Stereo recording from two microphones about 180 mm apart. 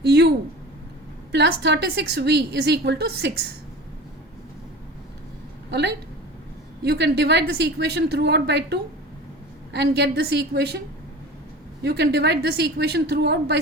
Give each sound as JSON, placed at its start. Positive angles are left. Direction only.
{"t": 0.0, "sound": "a sound", "side_deg": -70}
{"t": 1.3, "sound": "a woman's voice", "side_deg": -70}
{"t": 6.8, "sound": "a woman's voice", "side_deg": -70}
{"t": 11.8, "sound": "a woman's voice", "side_deg": -70}